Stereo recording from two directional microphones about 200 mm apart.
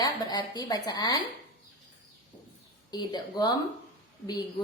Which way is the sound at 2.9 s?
20° left (ahead or behind).